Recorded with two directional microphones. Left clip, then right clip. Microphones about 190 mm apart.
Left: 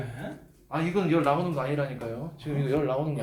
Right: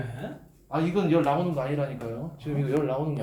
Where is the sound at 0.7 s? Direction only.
5° right (ahead or behind).